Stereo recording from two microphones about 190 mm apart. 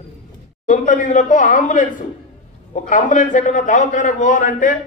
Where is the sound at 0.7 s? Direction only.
45° left (ahead or behind).